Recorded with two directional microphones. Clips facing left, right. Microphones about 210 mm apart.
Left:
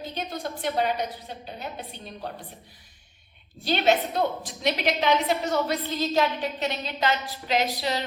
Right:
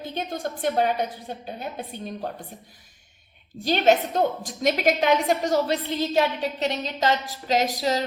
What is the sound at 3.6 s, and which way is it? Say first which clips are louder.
A woman's voice: right 3 dB; 45° right (ahead or behind).